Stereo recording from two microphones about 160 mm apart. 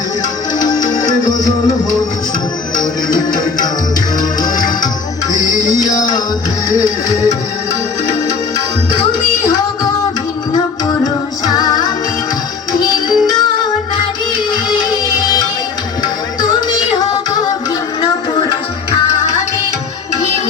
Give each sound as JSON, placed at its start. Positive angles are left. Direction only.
{"t": 0.6, "sound": "music", "side_deg": 25}
{"t": 4.2, "sound": "music", "side_deg": 55}
{"t": 6.0, "sound": "music", "side_deg": 25}
{"t": 10.5, "sound": "music", "side_deg": 25}
{"t": 13.1, "sound": "music", "side_deg": 25}